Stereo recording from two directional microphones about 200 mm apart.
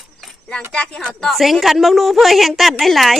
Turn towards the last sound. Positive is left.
turn(degrees=0)  # may be behind; listen again after turning